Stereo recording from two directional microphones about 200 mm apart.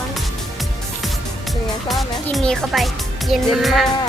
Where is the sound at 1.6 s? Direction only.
Centre (ahead or behind).